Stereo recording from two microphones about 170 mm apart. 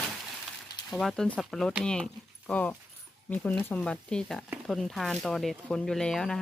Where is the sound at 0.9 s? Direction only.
Centre (ahead or behind).